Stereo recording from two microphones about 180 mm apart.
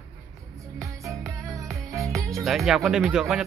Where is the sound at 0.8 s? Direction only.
15° right (ahead or behind).